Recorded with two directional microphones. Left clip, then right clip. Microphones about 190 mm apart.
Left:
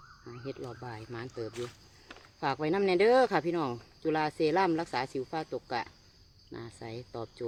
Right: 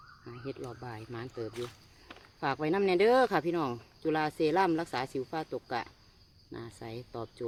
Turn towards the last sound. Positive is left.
turn(degrees=-5)  # may be behind; listen again after turning